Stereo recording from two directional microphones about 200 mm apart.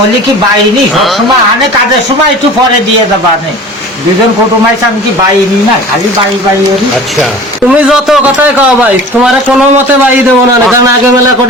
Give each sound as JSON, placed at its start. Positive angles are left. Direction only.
{"t": 7.7, "sound": "a man's voice", "side_deg": 0}
{"t": 10.7, "sound": "a man's voice", "side_deg": -15}